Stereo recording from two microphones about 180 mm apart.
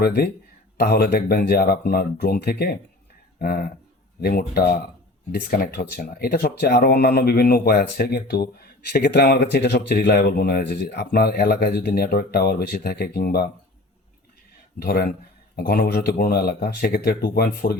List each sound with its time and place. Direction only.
0.0 s speech: 60° left (ahead or behind)
14.8 s speech: 60° left (ahead or behind)